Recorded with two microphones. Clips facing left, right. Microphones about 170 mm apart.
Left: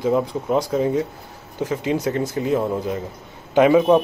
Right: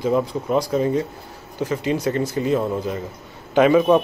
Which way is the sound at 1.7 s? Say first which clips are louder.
Even; 10° left (ahead or behind).